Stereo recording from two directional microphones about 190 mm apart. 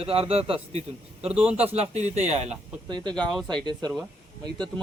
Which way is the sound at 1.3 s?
5° right (ahead or behind).